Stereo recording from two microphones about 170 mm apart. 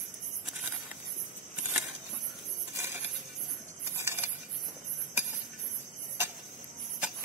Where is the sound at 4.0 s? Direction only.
15° right (ahead or behind).